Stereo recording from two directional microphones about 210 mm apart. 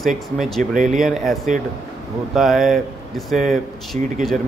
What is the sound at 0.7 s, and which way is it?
Speech, 35° right (ahead or behind).